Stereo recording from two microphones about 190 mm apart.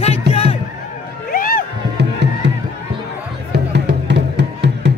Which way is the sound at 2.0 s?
65° right (ahead or behind).